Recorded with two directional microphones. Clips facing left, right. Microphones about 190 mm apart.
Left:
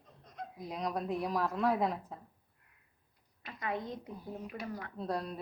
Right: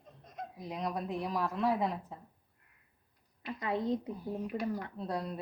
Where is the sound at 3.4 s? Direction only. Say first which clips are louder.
Right 5 dB; 25° right (ahead or behind).